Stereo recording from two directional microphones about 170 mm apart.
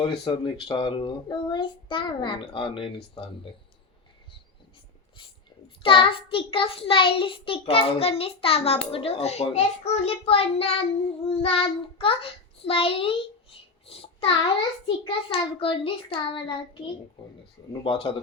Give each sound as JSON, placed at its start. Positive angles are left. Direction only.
{"t": 0.3, "sound": "a child's voice", "side_deg": 30}
{"t": 5.8, "sound": "child singing", "side_deg": 30}